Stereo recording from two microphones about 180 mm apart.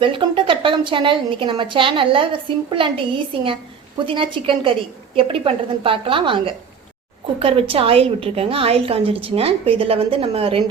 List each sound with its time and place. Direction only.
0.0 s a woman's voice: 25° right (ahead or behind)